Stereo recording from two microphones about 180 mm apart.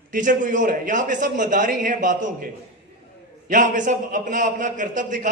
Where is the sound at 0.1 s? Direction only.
45° right (ahead or behind).